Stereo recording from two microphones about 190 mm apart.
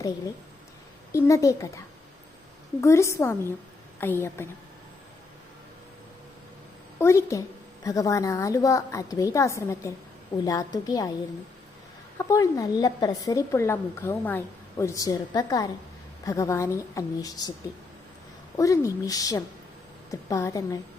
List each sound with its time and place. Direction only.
1.1 s a woman's voice: 15° left (ahead or behind)
2.8 s a woman's voice: 15° left (ahead or behind)
7.0 s a woman's voice: 15° left (ahead or behind)
12.1 s a woman's voice: 15° left (ahead or behind)
18.5 s a woman's voice: 15° left (ahead or behind)